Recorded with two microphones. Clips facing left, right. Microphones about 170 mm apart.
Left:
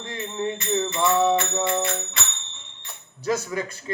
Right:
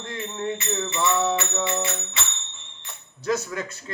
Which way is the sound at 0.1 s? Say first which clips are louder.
Left 2 dB; 15° left (ahead or behind).